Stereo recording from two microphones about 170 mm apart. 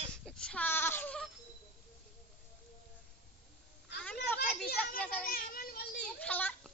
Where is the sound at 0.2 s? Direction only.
5° left (ahead or behind).